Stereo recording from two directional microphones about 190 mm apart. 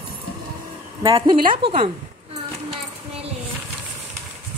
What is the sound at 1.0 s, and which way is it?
Speech, 25° right (ahead or behind).